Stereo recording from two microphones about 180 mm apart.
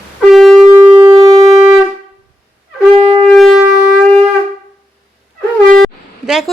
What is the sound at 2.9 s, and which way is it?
Shofar, 35° right (ahead or behind).